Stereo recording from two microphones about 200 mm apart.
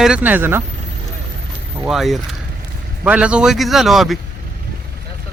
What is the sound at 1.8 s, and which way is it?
Speech, centre (ahead or behind).